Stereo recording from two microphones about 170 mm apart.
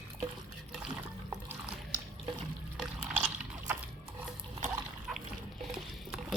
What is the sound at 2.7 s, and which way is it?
Liquid, 5° right (ahead or behind).